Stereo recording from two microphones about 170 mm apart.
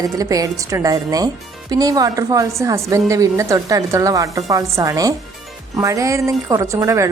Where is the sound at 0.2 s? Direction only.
20° right (ahead or behind).